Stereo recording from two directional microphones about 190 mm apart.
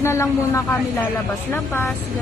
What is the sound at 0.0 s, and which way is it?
A woman's voice, 15° left (ahead or behind).